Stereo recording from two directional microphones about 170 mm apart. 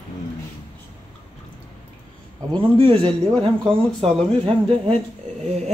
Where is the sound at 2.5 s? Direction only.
30° right (ahead or behind).